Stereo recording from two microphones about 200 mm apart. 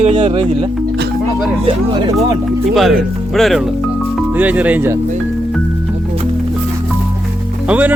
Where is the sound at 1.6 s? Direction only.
25° right (ahead or behind).